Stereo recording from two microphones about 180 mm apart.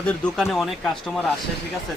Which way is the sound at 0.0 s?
Centre (ahead or behind).